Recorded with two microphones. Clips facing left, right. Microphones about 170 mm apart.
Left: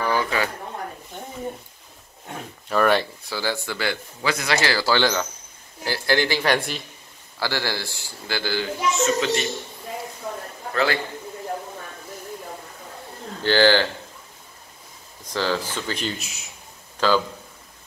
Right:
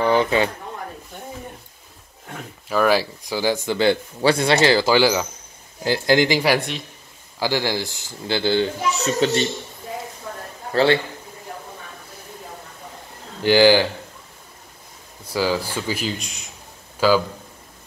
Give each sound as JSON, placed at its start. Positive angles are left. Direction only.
{"t": 0.0, "sound": "a sound", "side_deg": -25}
{"t": 2.7, "sound": "speech", "side_deg": 0}
{"t": 3.3, "sound": "speech", "side_deg": -15}
{"t": 7.3, "sound": "speech", "side_deg": -15}
{"t": 8.9, "sound": "speech", "side_deg": -35}
{"t": 10.7, "sound": "a man's voice", "side_deg": -30}
{"t": 13.4, "sound": "speech", "side_deg": -15}
{"t": 15.2, "sound": "speech", "side_deg": -10}
{"t": 17.0, "sound": "speech", "side_deg": -10}